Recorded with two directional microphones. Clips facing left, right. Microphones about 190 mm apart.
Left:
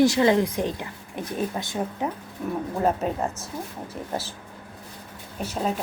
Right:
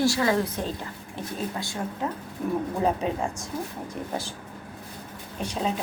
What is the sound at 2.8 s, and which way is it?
Speech, centre (ahead or behind).